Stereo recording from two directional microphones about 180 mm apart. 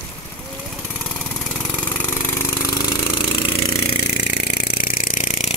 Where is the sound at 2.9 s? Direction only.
25° left (ahead or behind).